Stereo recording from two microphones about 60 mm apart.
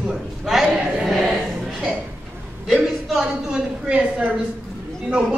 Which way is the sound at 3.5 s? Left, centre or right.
Centre.